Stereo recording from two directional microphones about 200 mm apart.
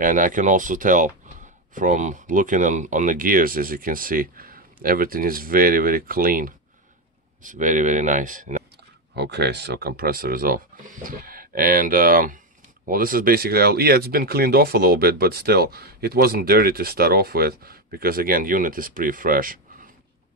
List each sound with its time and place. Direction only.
0.0 s speech: 40° right (ahead or behind)
9.1 s speech: 55° right (ahead or behind)